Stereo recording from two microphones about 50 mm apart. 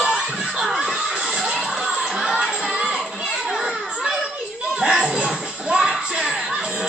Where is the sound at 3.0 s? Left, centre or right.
Centre.